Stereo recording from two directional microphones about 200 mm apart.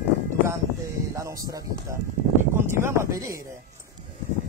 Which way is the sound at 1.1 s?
15° right (ahead or behind).